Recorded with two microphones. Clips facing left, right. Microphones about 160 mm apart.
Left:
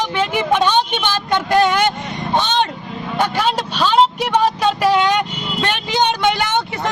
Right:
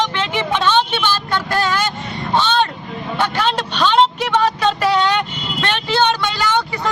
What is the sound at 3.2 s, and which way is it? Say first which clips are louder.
Vehicle: left 1 dB; 10° left (ahead or behind).